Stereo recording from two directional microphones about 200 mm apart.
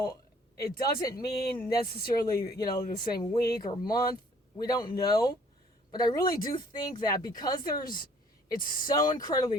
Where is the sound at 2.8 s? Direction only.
45° left (ahead or behind).